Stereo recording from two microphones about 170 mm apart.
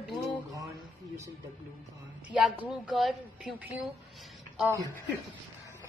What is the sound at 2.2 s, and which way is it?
A woman's voice, 10° right (ahead or behind).